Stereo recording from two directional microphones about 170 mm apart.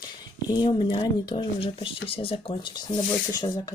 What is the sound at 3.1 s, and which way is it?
Speech, 20° left (ahead or behind).